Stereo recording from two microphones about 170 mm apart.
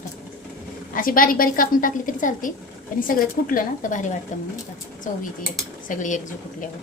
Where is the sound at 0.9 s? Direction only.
55° left (ahead or behind).